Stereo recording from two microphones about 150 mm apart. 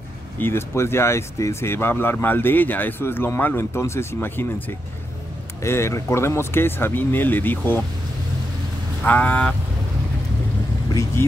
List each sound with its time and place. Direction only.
0.4 s speech: 15° left (ahead or behind)
9.0 s speech: 10° left (ahead or behind)
11.2 s speech: 15° left (ahead or behind)